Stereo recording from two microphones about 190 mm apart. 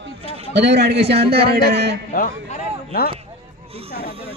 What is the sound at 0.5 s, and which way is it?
Music, 65° right (ahead or behind).